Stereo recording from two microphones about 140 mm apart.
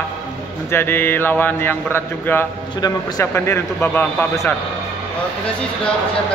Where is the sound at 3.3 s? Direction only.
15° left (ahead or behind).